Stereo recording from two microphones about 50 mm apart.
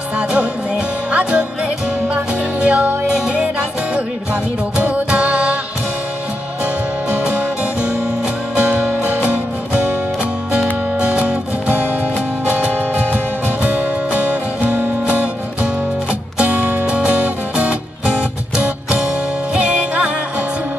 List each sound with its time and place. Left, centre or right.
0.3 s music: centre
2.6 s music: right
8.5 s music: right
10.6 s music: centre
14.1 s music: right